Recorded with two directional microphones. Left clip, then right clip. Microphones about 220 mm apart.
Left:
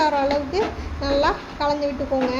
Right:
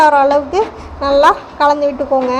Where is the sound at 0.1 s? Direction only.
20° right (ahead or behind).